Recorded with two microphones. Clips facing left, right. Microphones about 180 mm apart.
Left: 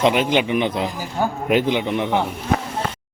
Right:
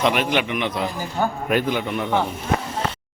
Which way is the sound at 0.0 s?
25° left (ahead or behind).